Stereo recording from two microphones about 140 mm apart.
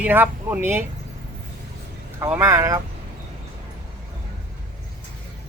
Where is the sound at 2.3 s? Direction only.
15° right (ahead or behind).